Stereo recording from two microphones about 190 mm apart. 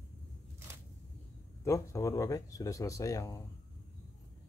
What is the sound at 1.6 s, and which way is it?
Speech, 15° left (ahead or behind).